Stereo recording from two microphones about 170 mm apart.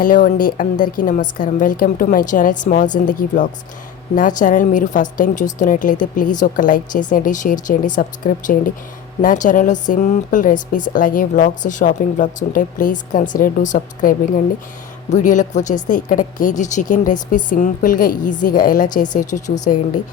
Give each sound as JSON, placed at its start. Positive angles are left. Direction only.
{"t": 0.0, "sound": "speech", "side_deg": 55}